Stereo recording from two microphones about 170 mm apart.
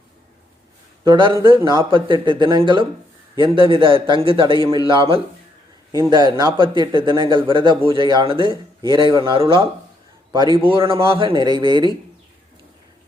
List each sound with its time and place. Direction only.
1.0 s a man's voice: 30° right (ahead or behind)